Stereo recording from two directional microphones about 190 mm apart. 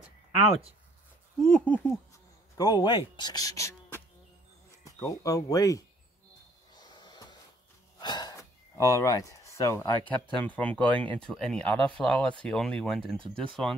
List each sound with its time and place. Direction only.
1.4 s speech: 5° left (ahead or behind)
2.5 s speech: 20° left (ahead or behind)
6.7 s snort: 20° left (ahead or behind)
8.0 s gasp: 20° left (ahead or behind)
10.3 s speech: 10° left (ahead or behind)